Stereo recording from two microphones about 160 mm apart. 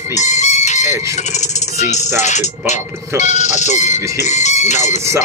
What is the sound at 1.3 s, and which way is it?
Speech, 45° left (ahead or behind).